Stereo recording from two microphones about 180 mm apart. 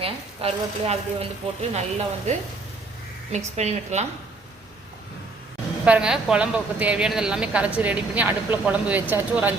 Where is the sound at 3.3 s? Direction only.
40° right (ahead or behind).